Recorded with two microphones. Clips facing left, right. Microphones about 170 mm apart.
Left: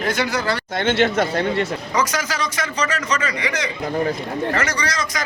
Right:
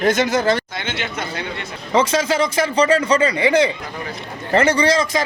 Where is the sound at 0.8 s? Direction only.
60° left (ahead or behind).